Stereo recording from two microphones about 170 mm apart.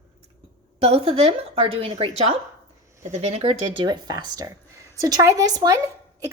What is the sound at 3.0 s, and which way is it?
Speech, 40° right (ahead or behind).